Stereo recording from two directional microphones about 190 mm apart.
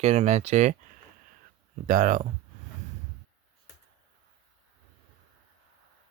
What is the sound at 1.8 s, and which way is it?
Speech, 45° right (ahead or behind).